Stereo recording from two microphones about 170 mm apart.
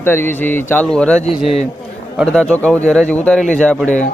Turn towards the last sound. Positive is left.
turn(degrees=10)  # may be behind; listen again after turning